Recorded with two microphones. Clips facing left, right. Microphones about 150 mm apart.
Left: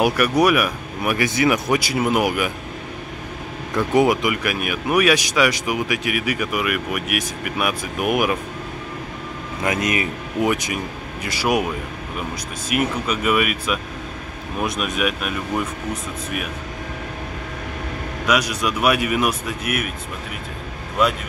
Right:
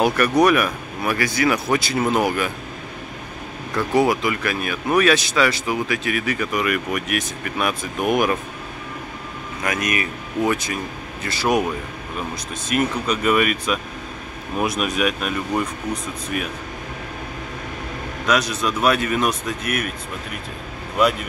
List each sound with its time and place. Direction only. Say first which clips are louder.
0.0 s speech: right 1 dB; 10° left (ahead or behind)
3.7 s speech: left 1 dB; 20° left (ahead or behind)
9.6 s speech: left 2 dB; 25° left (ahead or behind)
12.6 s speech: right 1 dB; 5° left (ahead or behind)
18.2 s speech: even; 10° left (ahead or behind)